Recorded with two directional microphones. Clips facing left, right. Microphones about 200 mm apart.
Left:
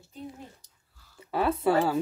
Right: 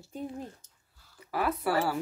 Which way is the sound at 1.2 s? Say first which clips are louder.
Left 5 dB; 25° left (ahead or behind).